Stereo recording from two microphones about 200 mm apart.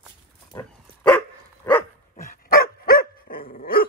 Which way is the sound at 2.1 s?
45° left (ahead or behind).